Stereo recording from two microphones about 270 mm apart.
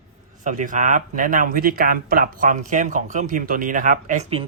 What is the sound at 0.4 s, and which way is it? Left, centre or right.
Speech, right.